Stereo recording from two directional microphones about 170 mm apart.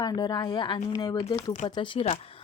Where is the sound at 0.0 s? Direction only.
25° left (ahead or behind).